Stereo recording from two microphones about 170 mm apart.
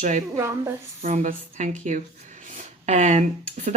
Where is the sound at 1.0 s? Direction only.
50° right (ahead or behind).